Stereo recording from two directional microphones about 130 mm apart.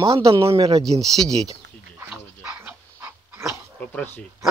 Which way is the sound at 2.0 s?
10° right (ahead or behind).